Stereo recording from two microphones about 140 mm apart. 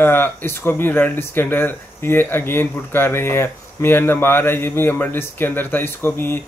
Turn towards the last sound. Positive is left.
turn(degrees=15)  # may be behind; listen again after turning